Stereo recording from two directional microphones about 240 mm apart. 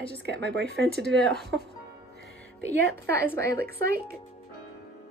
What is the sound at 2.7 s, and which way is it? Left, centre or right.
Speech, right.